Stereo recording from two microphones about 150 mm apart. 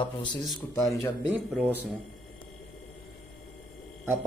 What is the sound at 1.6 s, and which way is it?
Speech, 10° right (ahead or behind).